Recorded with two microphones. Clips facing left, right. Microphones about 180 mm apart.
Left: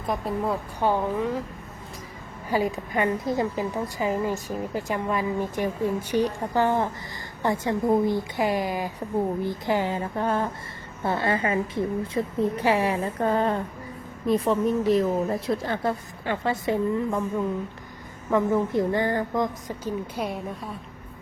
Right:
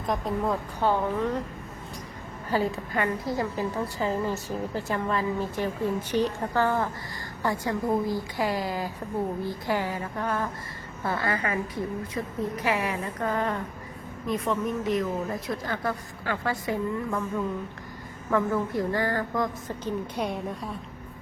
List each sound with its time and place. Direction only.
0.1 s a woman's voice: 5° left (ahead or behind)
2.5 s a woman's voice: 15° left (ahead or behind)
18.3 s a woman's voice: 20° left (ahead or behind)
19.8 s a woman's voice: 5° left (ahead or behind)